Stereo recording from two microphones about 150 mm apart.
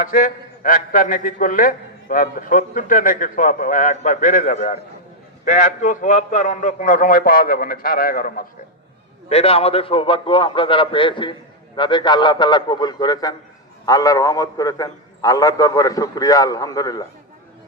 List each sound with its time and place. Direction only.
0.0 s a man's voice: 65° left (ahead or behind)
9.3 s a man's voice: 40° left (ahead or behind); by 17.1 s 25° left (ahead or behind)